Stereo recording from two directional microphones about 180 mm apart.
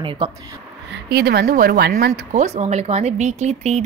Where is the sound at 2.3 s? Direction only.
40° right (ahead or behind).